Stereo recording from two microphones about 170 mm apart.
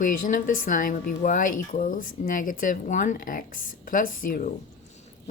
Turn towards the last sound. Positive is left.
turn(degrees=55)  # may be behind; listen again after turning